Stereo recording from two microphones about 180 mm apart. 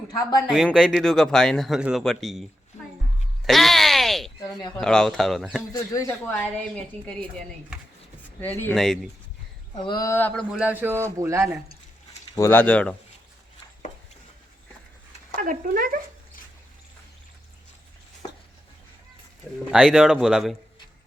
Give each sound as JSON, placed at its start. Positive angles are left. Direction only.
{"t": 0.1, "sound": "speech", "side_deg": 20}
{"t": 0.5, "sound": "speech", "side_deg": 0}
{"t": 3.4, "sound": "a sound", "side_deg": 0}
{"t": 4.8, "sound": "speech", "side_deg": 5}
{"t": 5.7, "sound": "speech", "side_deg": 20}
{"t": 9.7, "sound": "speech", "side_deg": 25}
{"t": 10.6, "sound": "speech", "side_deg": -10}
{"t": 12.3, "sound": "speech", "side_deg": 15}
{"t": 15.4, "sound": "speech", "side_deg": -50}
{"t": 19.7, "sound": "speech", "side_deg": 0}